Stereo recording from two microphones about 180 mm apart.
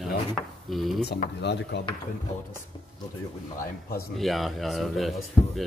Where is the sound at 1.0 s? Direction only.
50° left (ahead or behind).